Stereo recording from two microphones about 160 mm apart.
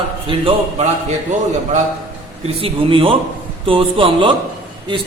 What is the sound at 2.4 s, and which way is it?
A man's voice, 35° right (ahead or behind).